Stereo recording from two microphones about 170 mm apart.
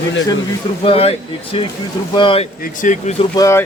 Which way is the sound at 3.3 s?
20° left (ahead or behind).